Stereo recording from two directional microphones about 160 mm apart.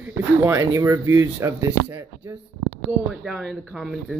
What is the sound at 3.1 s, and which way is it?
Speech, centre (ahead or behind).